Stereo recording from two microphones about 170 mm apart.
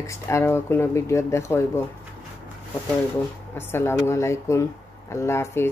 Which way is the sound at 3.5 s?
15° left (ahead or behind).